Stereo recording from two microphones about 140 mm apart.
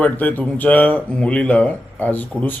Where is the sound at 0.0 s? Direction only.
10° left (ahead or behind).